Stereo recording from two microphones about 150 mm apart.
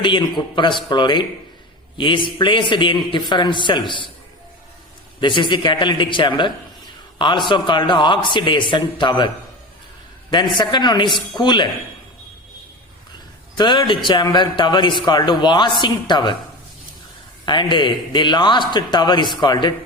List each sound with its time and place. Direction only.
0.0 s a man's voice: 30° left (ahead or behind)
5.2 s a man's voice: 30° left (ahead or behind)
10.3 s a man's voice: 30° left (ahead or behind)
13.6 s a man's voice: 30° left (ahead or behind)
17.4 s a man's voice: 30° left (ahead or behind)